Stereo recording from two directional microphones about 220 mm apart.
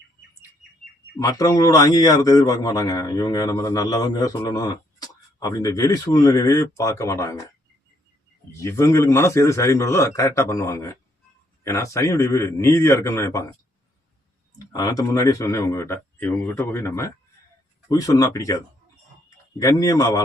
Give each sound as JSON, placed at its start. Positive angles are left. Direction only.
{"t": 1.2, "sound": "a man's voice", "side_deg": 15}
{"t": 8.5, "sound": "a man's voice", "side_deg": 15}
{"t": 14.7, "sound": "a man's voice", "side_deg": 15}